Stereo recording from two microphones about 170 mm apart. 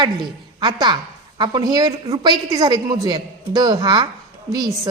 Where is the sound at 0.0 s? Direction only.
25° right (ahead or behind).